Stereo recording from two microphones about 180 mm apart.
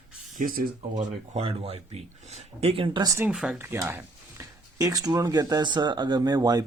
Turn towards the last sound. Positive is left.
turn(degrees=-20)  # may be behind; listen again after turning